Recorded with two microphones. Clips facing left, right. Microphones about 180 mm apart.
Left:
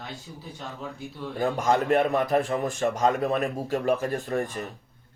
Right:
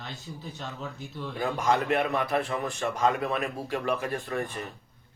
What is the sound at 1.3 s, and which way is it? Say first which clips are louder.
A man's voice: left 3 dB; 45° left (ahead or behind).